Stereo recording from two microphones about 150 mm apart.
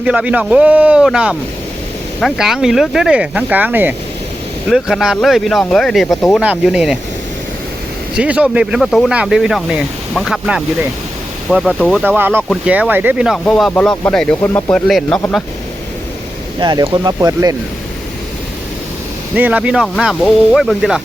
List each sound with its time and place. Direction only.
0.0 s speech: 10° right (ahead or behind)
4.7 s speech: centre (ahead or behind)
8.1 s speech: 10° right (ahead or behind)
12.0 s speech: 15° right (ahead or behind); by 14.8 s 15° left (ahead or behind)
14.8 s speech: centre (ahead or behind)
16.6 s speech: 30° right (ahead or behind)
19.4 s speech: 10° right (ahead or behind)